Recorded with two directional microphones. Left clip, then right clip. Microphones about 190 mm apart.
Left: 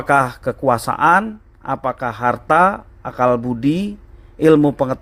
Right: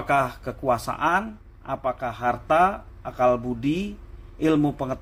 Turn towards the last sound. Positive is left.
turn(degrees=55)  # may be behind; listen again after turning